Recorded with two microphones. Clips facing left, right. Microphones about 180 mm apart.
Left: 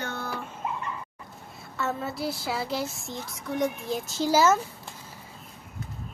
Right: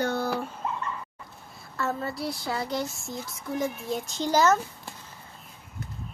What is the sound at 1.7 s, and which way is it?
Speech, centre (ahead or behind).